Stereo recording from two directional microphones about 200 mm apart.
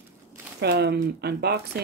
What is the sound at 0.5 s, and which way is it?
Speech, 55° right (ahead or behind).